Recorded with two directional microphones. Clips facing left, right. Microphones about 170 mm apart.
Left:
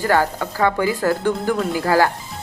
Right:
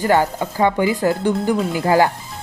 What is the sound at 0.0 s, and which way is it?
Speech, 20° right (ahead or behind).